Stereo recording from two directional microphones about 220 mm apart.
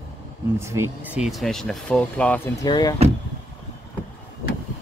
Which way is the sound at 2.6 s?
20° left (ahead or behind).